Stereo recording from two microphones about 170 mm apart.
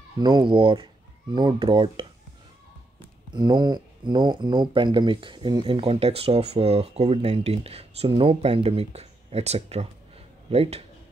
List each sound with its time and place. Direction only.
0.2 s speech: 25° right (ahead or behind)
3.3 s speech: 25° right (ahead or behind)